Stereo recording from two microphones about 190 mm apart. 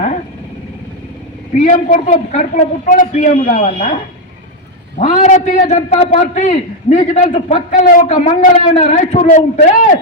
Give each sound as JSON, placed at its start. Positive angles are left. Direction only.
{"t": 1.5, "sound": "a man's voice", "side_deg": 40}
{"t": 4.9, "sound": "a man's voice", "side_deg": 40}
{"t": 8.1, "sound": "a man's voice", "side_deg": 35}